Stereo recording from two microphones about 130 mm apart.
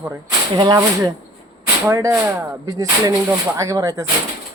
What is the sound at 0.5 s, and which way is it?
Speech, 30° right (ahead or behind).